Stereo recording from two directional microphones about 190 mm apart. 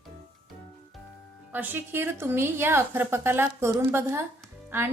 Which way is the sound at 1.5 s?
10° right (ahead or behind).